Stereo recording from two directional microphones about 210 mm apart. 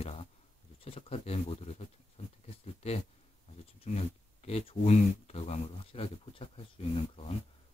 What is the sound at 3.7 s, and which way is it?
Speech, 30° left (ahead or behind).